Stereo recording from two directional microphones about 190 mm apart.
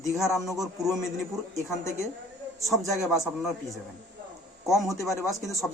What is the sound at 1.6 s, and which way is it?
Speech, 15° left (ahead or behind).